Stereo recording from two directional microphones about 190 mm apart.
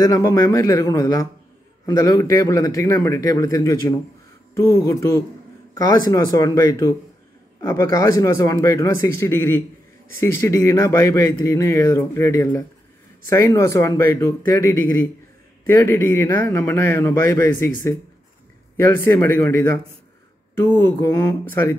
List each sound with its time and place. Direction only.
0.0 s speech: 15° left (ahead or behind)
18.9 s speech: 10° left (ahead or behind)